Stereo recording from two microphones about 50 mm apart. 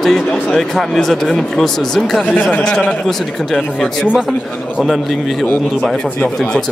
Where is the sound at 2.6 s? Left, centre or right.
Left.